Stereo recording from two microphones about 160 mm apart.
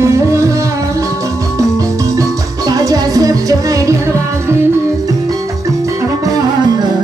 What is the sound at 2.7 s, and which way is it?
Music, 20° right (ahead or behind).